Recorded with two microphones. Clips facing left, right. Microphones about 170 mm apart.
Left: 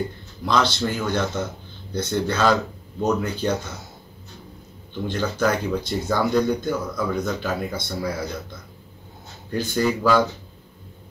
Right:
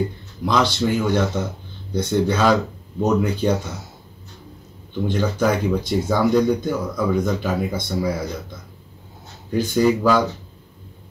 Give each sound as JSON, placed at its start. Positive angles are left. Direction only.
{"t": 0.5, "sound": "speech", "side_deg": -10}
{"t": 5.0, "sound": "speech", "side_deg": -10}
{"t": 9.5, "sound": "speech", "side_deg": -5}